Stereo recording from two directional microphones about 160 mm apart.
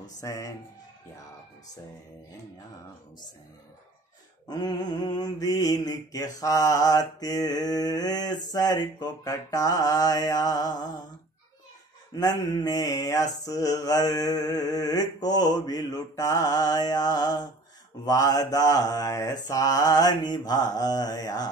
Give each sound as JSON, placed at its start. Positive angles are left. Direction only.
{"t": 0.2, "sound": "mantra", "side_deg": 20}
{"t": 4.5, "sound": "mantra", "side_deg": 25}
{"t": 12.1, "sound": "mantra", "side_deg": 25}